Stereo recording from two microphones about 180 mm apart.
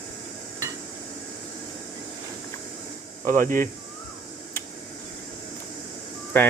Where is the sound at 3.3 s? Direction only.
50° right (ahead or behind).